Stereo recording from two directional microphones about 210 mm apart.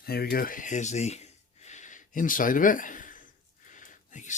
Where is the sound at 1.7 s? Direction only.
35° left (ahead or behind).